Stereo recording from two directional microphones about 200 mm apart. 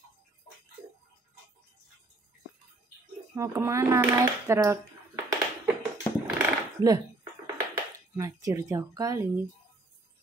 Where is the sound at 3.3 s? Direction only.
15° right (ahead or behind).